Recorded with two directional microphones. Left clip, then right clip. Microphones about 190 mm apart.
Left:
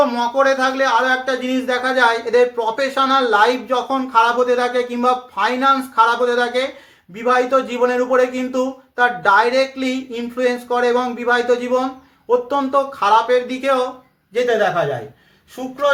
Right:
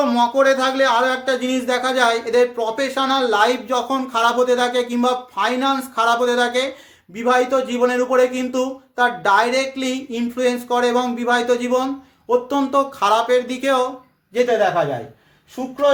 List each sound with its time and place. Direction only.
0.0 s speech: 20° right (ahead or behind)